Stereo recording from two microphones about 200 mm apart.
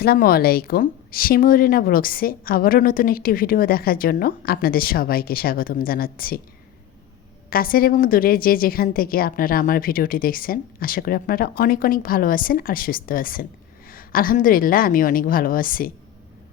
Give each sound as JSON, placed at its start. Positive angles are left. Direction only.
{"t": 0.0, "sound": "a woman's voice", "side_deg": 50}
{"t": 7.5, "sound": "a woman's voice", "side_deg": 45}